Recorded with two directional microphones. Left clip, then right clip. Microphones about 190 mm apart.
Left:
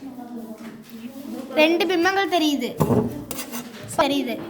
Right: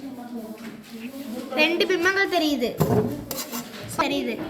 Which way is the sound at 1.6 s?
60° left (ahead or behind).